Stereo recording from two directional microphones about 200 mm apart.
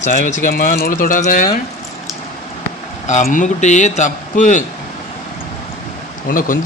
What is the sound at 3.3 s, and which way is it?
A man's voice, 40° left (ahead or behind).